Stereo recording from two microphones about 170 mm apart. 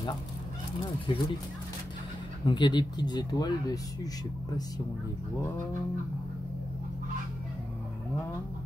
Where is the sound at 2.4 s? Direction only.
30° left (ahead or behind).